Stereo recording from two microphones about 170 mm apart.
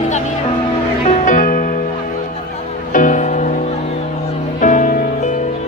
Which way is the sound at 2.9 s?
50° left (ahead or behind).